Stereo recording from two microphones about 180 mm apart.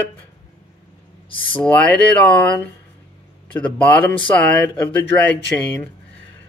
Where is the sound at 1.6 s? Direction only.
5° left (ahead or behind).